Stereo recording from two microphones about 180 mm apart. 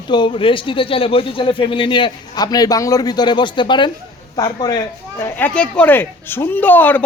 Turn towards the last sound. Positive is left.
turn(degrees=10)  # may be behind; listen again after turning